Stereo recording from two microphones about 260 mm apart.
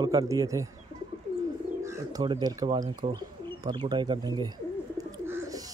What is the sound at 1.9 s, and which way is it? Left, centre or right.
Speech, centre.